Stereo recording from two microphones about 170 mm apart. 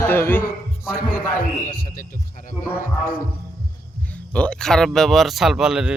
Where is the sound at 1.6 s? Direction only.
55° left (ahead or behind).